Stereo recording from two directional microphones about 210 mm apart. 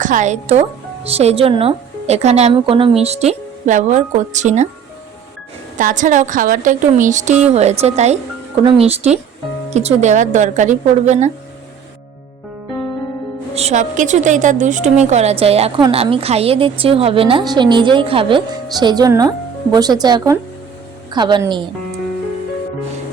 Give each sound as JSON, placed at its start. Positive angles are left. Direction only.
{"t": 0.0, "sound": "a woman's voice", "side_deg": -35}
{"t": 5.7, "sound": "a woman's voice", "side_deg": -40}
{"t": 13.5, "sound": "a woman's voice", "side_deg": -30}